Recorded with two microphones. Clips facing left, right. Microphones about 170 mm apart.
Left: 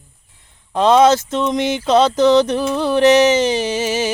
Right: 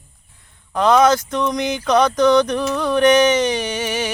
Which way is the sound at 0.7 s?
25° left (ahead or behind).